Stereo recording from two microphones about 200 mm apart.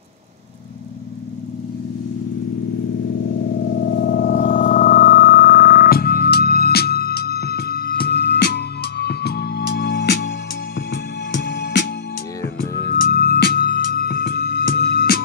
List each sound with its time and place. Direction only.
3.8 s music: 50° left (ahead or behind)
13.0 s music: 50° left (ahead or behind)